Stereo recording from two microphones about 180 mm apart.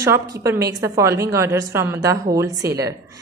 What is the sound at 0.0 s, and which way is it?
A woman's voice, 15° right (ahead or behind).